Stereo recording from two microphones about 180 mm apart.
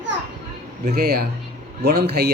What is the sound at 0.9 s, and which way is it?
A man's voice, 65° right (ahead or behind).